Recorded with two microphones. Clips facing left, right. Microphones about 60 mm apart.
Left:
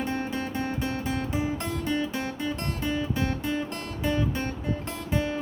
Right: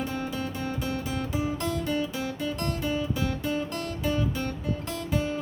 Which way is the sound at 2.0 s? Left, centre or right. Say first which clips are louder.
Even; left.